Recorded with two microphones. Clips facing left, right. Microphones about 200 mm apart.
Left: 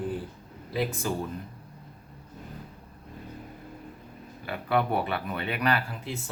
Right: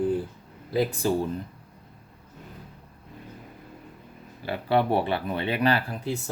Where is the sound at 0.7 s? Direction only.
35° right (ahead or behind).